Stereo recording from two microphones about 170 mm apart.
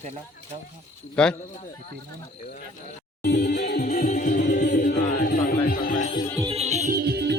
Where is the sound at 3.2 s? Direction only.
75° left (ahead or behind).